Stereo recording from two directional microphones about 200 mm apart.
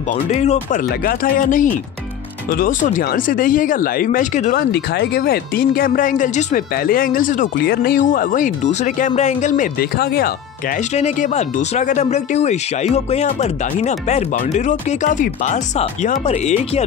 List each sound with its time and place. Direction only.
0.1 s speech: 35° left (ahead or behind)
4.7 s speech: 55° left (ahead or behind); by 16.8 s 35° left (ahead or behind)